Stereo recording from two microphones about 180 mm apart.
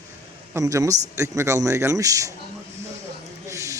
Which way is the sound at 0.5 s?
20° right (ahead or behind).